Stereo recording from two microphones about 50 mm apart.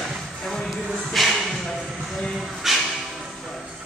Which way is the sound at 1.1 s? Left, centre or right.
Centre.